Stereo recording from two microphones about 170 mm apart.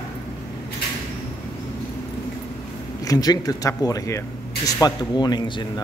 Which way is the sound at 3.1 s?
20° left (ahead or behind).